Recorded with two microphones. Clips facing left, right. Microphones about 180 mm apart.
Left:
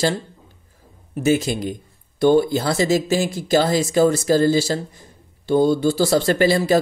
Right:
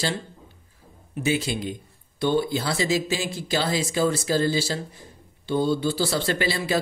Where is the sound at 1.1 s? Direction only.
45° left (ahead or behind).